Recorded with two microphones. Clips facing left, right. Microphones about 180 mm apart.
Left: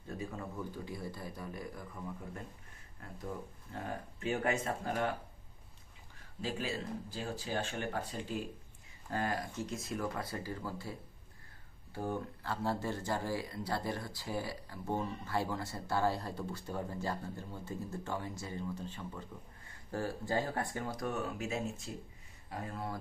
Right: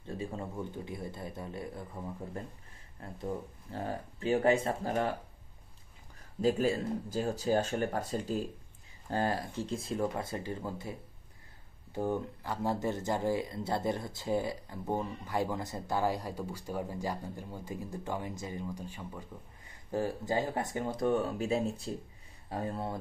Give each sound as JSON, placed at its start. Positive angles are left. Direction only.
{"t": 0.0, "sound": "speech", "side_deg": -30}
{"t": 3.0, "sound": "speech", "side_deg": -30}
{"t": 6.4, "sound": "speech", "side_deg": -45}